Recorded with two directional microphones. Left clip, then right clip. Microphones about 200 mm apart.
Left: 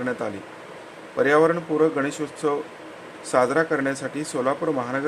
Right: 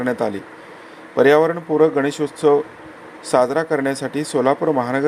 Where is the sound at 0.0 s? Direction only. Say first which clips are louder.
Right 6 dB; 20° right (ahead or behind).